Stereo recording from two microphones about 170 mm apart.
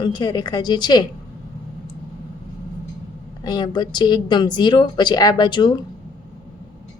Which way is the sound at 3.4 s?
25° left (ahead or behind).